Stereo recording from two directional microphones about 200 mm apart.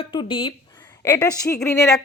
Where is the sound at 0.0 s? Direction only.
25° left (ahead or behind).